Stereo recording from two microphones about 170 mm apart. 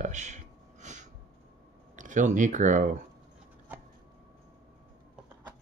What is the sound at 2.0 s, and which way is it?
Speech, 45° right (ahead or behind).